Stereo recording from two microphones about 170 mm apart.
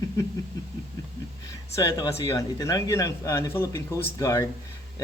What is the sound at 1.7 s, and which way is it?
Speech, 20° left (ahead or behind).